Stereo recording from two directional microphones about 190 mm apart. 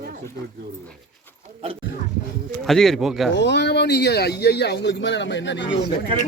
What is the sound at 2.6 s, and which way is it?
Speech, centre (ahead or behind).